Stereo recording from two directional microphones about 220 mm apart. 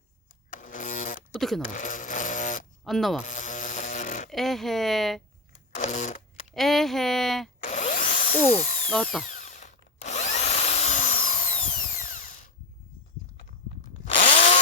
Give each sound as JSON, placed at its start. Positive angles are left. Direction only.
{"t": 0.5, "sound": "a sound", "side_deg": 35}
{"t": 1.4, "sound": "speech", "side_deg": 0}
{"t": 1.7, "sound": "a sound", "side_deg": 35}
{"t": 2.8, "sound": "speech", "side_deg": 0}
{"t": 3.2, "sound": "buzz", "side_deg": 35}
{"t": 4.3, "sound": "speech", "side_deg": 0}
{"t": 5.7, "sound": "camera", "side_deg": 35}
{"t": 6.5, "sound": "speech", "side_deg": 0}
{"t": 7.6, "sound": "drill", "side_deg": 35}
{"t": 14.0, "sound": "chainsaw", "side_deg": 35}